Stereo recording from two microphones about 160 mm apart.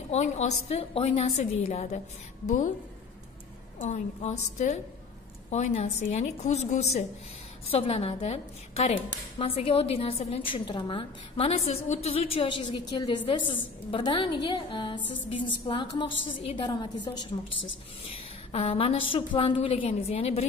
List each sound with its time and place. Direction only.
0.1 s a woman's voice: 45° left (ahead or behind)
3.8 s a woman's voice: 45° left (ahead or behind); by 17.3 s 25° left (ahead or behind)
18.5 s a woman's voice: 35° left (ahead or behind)